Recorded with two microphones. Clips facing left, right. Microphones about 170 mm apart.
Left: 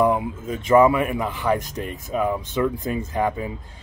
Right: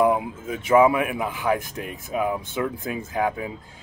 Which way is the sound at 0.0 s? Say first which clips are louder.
Even; 5° right (ahead or behind).